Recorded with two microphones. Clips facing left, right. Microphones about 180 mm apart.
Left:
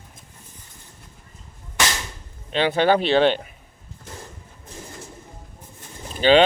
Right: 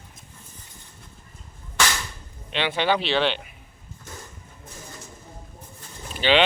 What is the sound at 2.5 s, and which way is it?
Speech, 40° left (ahead or behind).